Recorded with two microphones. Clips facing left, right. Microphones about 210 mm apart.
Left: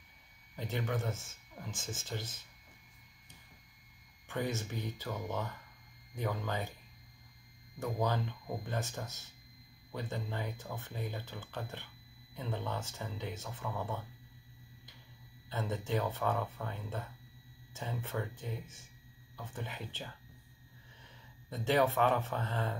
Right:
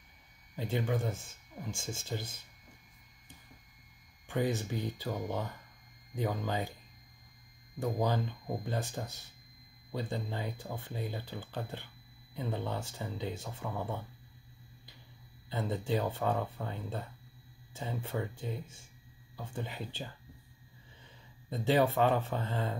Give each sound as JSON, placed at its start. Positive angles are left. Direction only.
{"t": 0.6, "sound": "speech", "side_deg": -15}
{"t": 4.3, "sound": "speech", "side_deg": -15}
{"t": 7.8, "sound": "speech", "side_deg": -15}
{"t": 15.5, "sound": "speech", "side_deg": -15}
{"t": 21.5, "sound": "speech", "side_deg": -15}